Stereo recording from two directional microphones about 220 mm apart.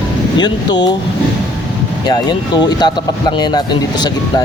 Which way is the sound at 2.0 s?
20° left (ahead or behind).